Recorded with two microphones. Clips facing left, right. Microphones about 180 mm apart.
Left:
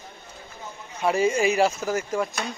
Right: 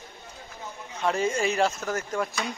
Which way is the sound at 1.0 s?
10° left (ahead or behind).